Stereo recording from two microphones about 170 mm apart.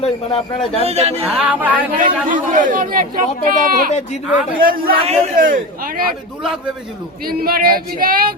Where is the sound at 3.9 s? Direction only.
45° left (ahead or behind).